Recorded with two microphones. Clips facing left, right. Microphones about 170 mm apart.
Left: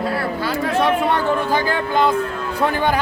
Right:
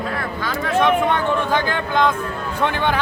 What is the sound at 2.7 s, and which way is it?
Speech, 40° left (ahead or behind).